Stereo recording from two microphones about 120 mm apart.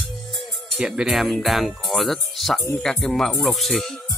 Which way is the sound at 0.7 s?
5° right (ahead or behind).